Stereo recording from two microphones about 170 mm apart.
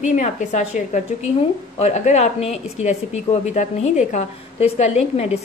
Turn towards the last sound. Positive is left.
turn(degrees=40)  # may be behind; listen again after turning